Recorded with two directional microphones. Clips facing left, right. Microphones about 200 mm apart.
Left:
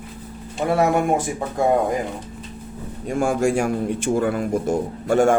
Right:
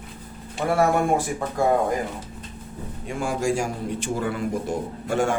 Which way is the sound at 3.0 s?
50° left (ahead or behind).